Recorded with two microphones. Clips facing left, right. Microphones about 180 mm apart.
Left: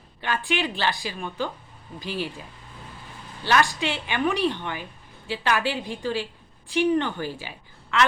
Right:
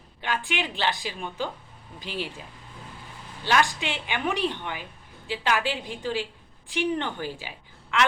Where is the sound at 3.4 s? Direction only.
15° right (ahead or behind).